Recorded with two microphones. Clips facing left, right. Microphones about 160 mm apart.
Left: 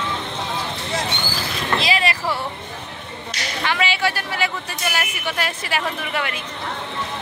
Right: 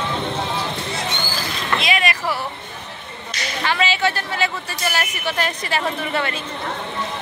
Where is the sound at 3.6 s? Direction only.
15° left (ahead or behind).